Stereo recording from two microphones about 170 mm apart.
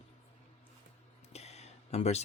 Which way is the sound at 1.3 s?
40° left (ahead or behind).